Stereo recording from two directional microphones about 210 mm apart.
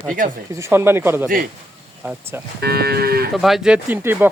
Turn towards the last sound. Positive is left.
turn(degrees=-10)  # may be behind; listen again after turning